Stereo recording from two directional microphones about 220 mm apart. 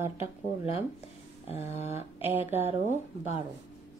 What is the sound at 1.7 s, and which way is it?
Speech, 10° right (ahead or behind).